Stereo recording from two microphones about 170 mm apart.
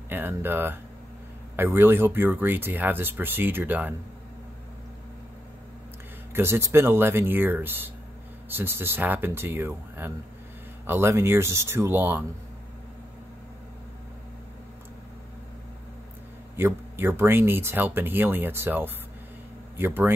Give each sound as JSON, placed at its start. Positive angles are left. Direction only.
{"t": 0.1, "sound": "speech", "side_deg": -15}
{"t": 6.3, "sound": "speech", "side_deg": -15}
{"t": 16.5, "sound": "speech", "side_deg": -15}